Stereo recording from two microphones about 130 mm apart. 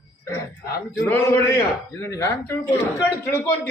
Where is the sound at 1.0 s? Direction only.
15° left (ahead or behind).